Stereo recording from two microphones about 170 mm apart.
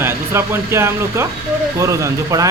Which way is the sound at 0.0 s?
15° right (ahead or behind).